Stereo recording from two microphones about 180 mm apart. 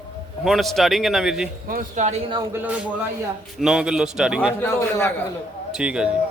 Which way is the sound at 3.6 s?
5° right (ahead or behind).